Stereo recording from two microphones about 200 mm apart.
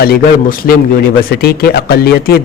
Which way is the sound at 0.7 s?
50° left (ahead or behind).